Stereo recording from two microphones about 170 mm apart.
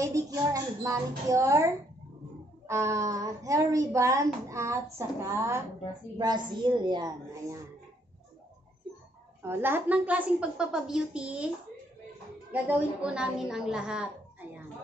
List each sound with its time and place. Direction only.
0.0 s a woman's voice: 20° right (ahead or behind)
2.7 s a woman's voice: 15° right (ahead or behind)
9.4 s a woman's voice: 15° right (ahead or behind)
12.6 s a woman's voice: 10° right (ahead or behind)